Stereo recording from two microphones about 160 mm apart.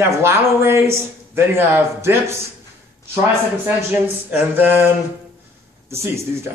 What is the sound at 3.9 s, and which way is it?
Speech, 10° right (ahead or behind).